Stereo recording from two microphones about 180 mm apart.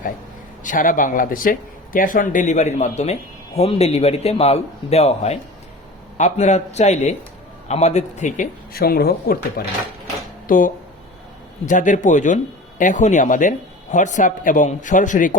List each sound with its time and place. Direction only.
0.6 s speech: 50° left (ahead or behind)
8.7 s a man's voice: 60° left (ahead or behind)